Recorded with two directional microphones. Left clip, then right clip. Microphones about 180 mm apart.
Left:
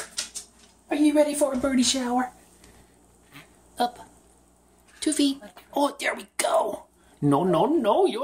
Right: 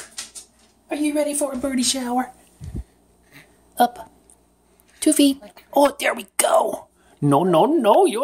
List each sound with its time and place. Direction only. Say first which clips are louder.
0.8 s a woman's voice: left 1 dB; 10° right (ahead or behind)
3.7 s speech: right 8 dB; 35° right (ahead or behind)